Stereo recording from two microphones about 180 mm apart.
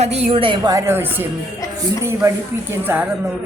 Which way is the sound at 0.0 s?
35° right (ahead or behind).